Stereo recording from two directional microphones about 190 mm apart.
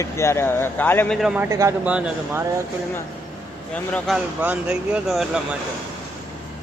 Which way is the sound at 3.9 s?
Centre (ahead or behind).